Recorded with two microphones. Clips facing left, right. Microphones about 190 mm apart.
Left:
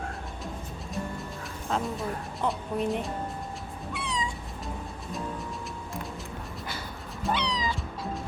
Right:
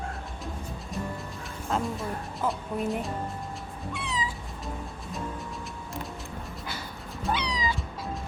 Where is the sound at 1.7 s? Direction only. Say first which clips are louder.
Even; centre (ahead or behind).